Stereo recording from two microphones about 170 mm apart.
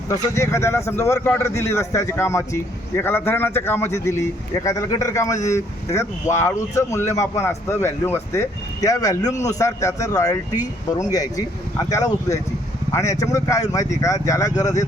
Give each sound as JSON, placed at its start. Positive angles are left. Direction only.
{"t": 0.1, "sound": "speech", "side_deg": 15}